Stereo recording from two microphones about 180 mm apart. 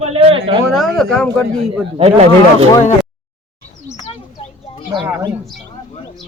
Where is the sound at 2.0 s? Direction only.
35° right (ahead or behind).